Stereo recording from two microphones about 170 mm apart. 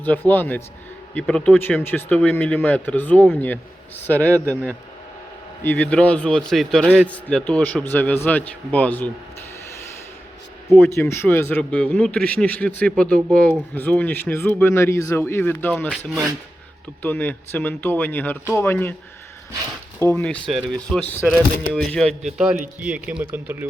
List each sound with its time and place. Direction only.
0.0 s speech: 10° left (ahead or behind)
4.2 s speech: 15° right (ahead or behind)
5.6 s speech: 10° left (ahead or behind)
6.8 s speech: 10° right (ahead or behind)
7.1 s speech: 10° left (ahead or behind)
10.7 s speech: 15° left (ahead or behind)
17.0 s speech: 10° left (ahead or behind)
20.0 s speech: 10° left (ahead or behind); by 23.6 s 10° right (ahead or behind)